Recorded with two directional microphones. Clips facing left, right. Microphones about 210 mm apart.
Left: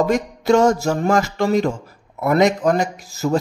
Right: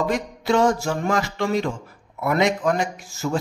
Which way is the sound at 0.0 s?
45° left (ahead or behind).